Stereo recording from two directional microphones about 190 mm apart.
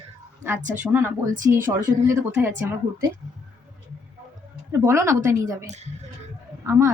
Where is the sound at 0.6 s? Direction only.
40° right (ahead or behind).